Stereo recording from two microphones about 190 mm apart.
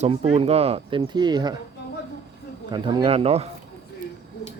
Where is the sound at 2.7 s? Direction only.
25° right (ahead or behind).